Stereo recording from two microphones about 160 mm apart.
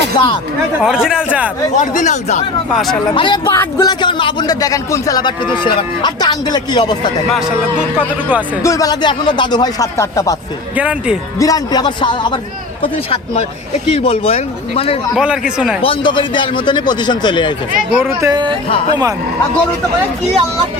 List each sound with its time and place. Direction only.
0.1 s a man's voice: 30° left (ahead or behind)
0.8 s speech: 5° right (ahead or behind)
1.7 s speech: 50° left (ahead or behind)
2.7 s speech: centre (ahead or behind)
3.2 s a man's voice: 30° left (ahead or behind)
7.9 s speech: 10° right (ahead or behind)
8.6 s a man's voice: 20° left (ahead or behind)
10.8 s speech: 5° right (ahead or behind)
11.3 s a man's voice: 20° left (ahead or behind); by 14.9 s 40° left (ahead or behind)
15.1 s speech: 5° right (ahead or behind)
15.8 s a man's voice: 35° left (ahead or behind)
17.9 s speech: 15° right (ahead or behind)